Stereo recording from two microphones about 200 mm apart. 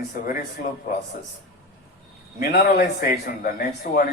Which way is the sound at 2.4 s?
50° left (ahead or behind).